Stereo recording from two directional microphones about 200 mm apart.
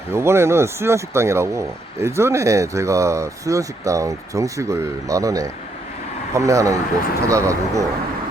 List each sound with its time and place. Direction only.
0.1 s speech: 15° right (ahead or behind)